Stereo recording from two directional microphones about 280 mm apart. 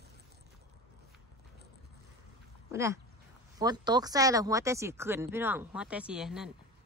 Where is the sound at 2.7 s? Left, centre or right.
Centre.